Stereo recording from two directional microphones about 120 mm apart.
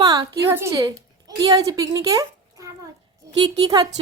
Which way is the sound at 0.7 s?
35° right (ahead or behind).